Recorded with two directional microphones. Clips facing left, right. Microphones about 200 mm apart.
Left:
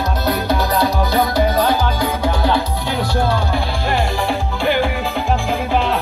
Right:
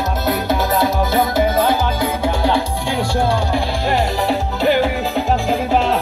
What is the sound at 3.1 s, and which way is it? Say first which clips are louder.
Music: right 1 dB; 30° right (ahead or behind).